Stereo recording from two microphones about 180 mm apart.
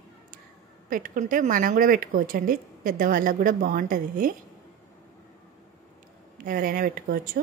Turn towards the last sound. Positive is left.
turn(degrees=-50)  # may be behind; listen again after turning